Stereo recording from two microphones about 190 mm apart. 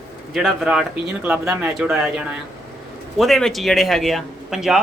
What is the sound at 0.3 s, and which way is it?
Speech, centre (ahead or behind).